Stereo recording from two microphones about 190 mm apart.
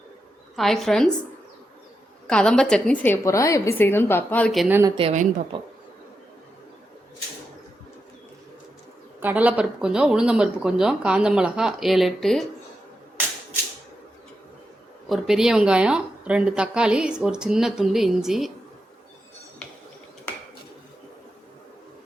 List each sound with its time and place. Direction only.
0.5 s speech: centre (ahead or behind)
2.2 s a woman's voice: 5° left (ahead or behind)
4.9 s a woman's voice: 30° right (ahead or behind)
9.2 s speech: 10° right (ahead or behind)
15.1 s speech: centre (ahead or behind)